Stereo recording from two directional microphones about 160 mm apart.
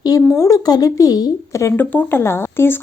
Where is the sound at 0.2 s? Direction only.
20° left (ahead or behind).